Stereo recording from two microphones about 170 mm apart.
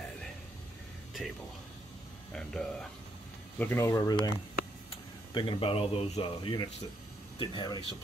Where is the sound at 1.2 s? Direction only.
Centre (ahead or behind).